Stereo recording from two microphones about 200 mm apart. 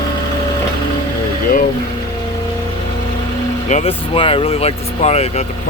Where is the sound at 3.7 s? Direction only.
30° left (ahead or behind).